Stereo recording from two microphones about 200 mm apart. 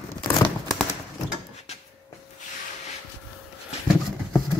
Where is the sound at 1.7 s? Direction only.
35° left (ahead or behind).